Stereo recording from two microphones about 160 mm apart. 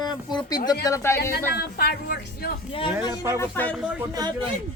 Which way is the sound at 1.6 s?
75° left (ahead or behind).